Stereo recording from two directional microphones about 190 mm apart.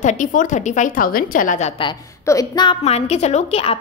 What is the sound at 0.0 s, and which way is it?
A woman's voice, 45° left (ahead or behind).